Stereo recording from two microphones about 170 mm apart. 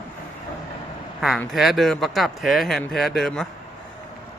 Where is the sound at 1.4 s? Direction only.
Centre (ahead or behind).